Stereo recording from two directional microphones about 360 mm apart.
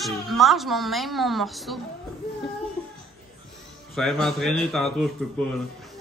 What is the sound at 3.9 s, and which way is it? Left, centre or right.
A woman's voice, centre.